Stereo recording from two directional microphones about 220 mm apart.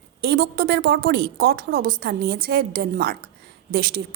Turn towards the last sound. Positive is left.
turn(degrees=-45)  # may be behind; listen again after turning